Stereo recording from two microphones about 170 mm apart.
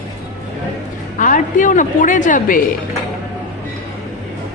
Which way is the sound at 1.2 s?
50° left (ahead or behind).